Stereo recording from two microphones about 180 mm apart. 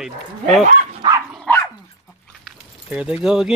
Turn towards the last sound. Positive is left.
turn(degrees=-5)  # may be behind; listen again after turning